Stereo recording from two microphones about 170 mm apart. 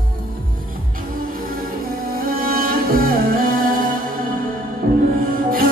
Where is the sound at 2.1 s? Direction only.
60° right (ahead or behind).